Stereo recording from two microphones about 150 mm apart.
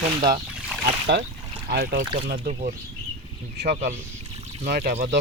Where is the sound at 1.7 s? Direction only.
90° right.